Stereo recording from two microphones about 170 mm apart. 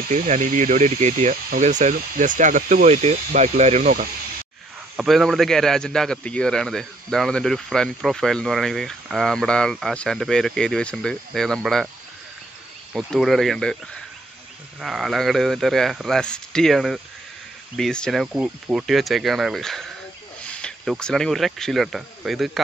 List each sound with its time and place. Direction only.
0.1 s speech: 50° right (ahead or behind)
4.9 s a man's voice: centre (ahead or behind)
12.9 s a man's voice: centre (ahead or behind)
14.8 s a man's voice: centre (ahead or behind)